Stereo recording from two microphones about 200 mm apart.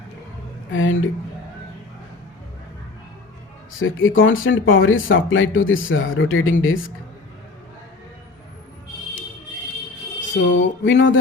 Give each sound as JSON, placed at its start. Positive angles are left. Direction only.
{"t": 0.7, "sound": "a woman's voice", "side_deg": 75}
{"t": 3.8, "sound": "speech", "side_deg": 80}
{"t": 10.2, "sound": "speech", "side_deg": 65}